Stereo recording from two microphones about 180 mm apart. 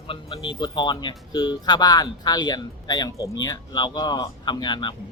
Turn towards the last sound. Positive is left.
turn(degrees=25)  # may be behind; listen again after turning